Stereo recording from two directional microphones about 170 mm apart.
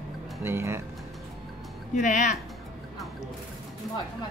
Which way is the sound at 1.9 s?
45° left (ahead or behind).